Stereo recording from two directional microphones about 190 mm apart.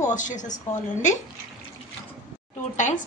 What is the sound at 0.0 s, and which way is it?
Speech, 40° left (ahead or behind).